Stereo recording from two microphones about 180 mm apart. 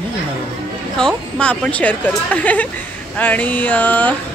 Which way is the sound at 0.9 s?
5° left (ahead or behind).